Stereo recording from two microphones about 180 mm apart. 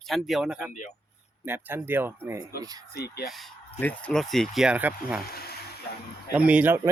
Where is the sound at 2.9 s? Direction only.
60° left (ahead or behind).